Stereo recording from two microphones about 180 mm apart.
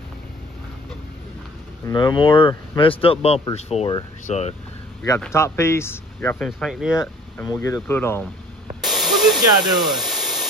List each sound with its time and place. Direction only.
1.9 s speech: 25° left (ahead or behind)
5.2 s speech: 15° left (ahead or behind); by 7.0 s centre (ahead or behind)
7.0 s speech: 15° left (ahead or behind)
8.8 s a sound: centre (ahead or behind)
9.6 s speech: 25° right (ahead or behind)
9.9 s hair dryer: centre (ahead or behind)